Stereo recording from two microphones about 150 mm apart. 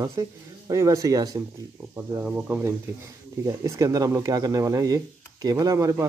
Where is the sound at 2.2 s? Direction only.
10° right (ahead or behind).